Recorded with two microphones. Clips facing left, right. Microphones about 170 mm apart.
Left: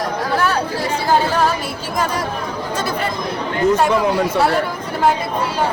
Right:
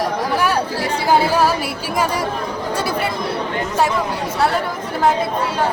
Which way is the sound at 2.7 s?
10° right (ahead or behind).